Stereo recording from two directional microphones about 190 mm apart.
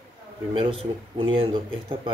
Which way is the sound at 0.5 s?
25° right (ahead or behind).